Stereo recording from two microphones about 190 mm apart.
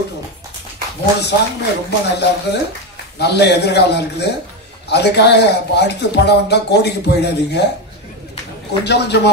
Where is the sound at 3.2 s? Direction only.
60° left (ahead or behind).